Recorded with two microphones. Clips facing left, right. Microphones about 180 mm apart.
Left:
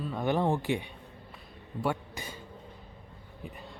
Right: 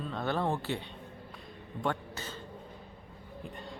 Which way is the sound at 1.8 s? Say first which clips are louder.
Left 2 dB; 10° left (ahead or behind).